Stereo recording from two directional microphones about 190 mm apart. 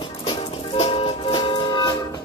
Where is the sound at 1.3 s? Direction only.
25° left (ahead or behind).